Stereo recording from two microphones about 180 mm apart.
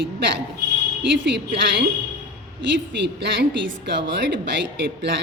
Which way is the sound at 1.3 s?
70° right (ahead or behind).